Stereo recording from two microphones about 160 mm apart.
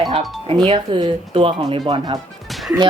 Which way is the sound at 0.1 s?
30° right (ahead or behind).